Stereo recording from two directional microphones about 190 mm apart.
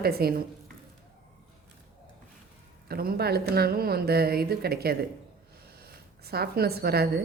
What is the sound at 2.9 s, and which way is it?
A woman's voice, 55° right (ahead or behind).